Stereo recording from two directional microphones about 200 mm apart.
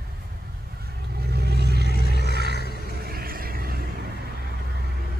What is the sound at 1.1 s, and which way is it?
Vehicle, 55° right (ahead or behind).